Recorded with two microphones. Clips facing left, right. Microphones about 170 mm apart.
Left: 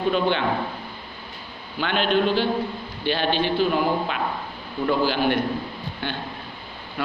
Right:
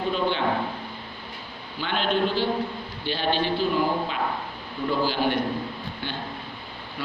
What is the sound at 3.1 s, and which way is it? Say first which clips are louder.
Speech: left 3 dB; 65° left (ahead or behind).